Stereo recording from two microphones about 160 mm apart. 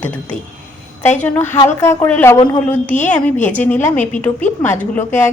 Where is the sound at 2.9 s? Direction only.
50° left (ahead or behind).